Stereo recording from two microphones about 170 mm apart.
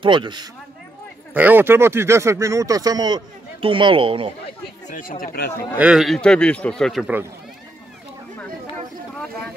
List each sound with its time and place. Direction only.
0.0 s speech: 30° right (ahead or behind)
1.3 s speech: 10° right (ahead or behind); by 4.3 s 30° right (ahead or behind)
4.8 s speech: 50° left (ahead or behind)
5.8 s a man's voice: 5° right (ahead or behind)